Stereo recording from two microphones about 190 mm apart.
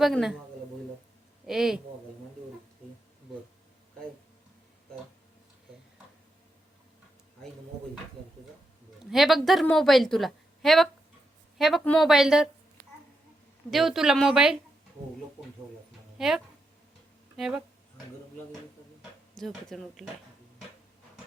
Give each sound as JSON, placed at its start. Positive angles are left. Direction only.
{"t": 0.0, "sound": "a woman's voice", "side_deg": 0}
{"t": 1.5, "sound": "a woman's voice", "side_deg": 0}
{"t": 9.0, "sound": "a woman's voice", "side_deg": 0}
{"t": 13.7, "sound": "a woman's voice", "side_deg": 0}
{"t": 16.1, "sound": "speech", "side_deg": 0}
{"t": 19.4, "sound": "a woman's voice", "side_deg": 0}